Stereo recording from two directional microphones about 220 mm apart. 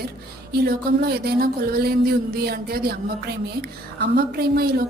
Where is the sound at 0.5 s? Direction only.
45° right (ahead or behind).